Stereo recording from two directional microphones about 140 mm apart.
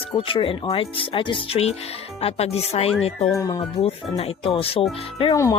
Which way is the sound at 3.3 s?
25° left (ahead or behind).